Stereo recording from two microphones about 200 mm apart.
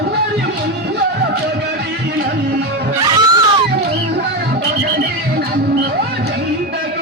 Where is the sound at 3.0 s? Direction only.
20° right (ahead or behind).